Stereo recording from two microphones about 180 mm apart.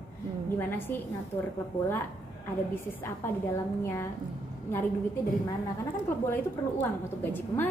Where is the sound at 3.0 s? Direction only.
15° left (ahead or behind).